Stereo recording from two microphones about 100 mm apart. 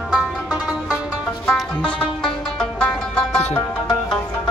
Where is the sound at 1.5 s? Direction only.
5° left (ahead or behind).